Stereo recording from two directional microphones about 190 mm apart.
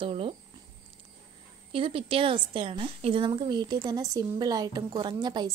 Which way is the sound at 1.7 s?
30° right (ahead or behind).